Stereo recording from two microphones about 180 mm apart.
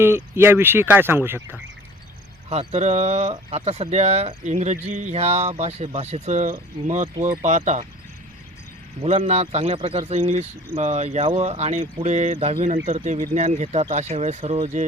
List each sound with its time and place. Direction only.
0.0 s speech: 15° right (ahead or behind)
2.5 s speech: 40° right (ahead or behind)
9.0 s speech: 35° right (ahead or behind)